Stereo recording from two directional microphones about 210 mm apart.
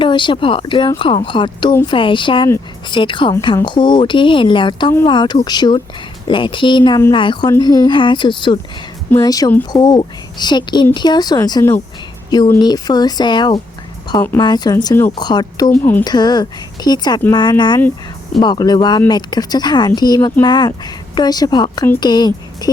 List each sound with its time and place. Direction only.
0.0 s speech: 25° left (ahead or behind)
15.7 s speech: 10° left (ahead or behind)
16.0 s speech: 20° left (ahead or behind)